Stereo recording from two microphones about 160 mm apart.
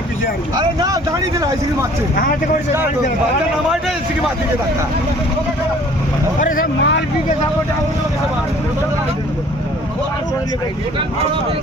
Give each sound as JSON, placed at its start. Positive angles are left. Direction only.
{"t": 0.5, "sound": "speech", "side_deg": -25}
{"t": 2.1, "sound": "speech", "side_deg": 65}
{"t": 6.7, "sound": "speech", "side_deg": 90}